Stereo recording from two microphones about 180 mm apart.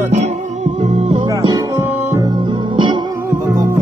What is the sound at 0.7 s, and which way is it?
Music, 35° right (ahead or behind).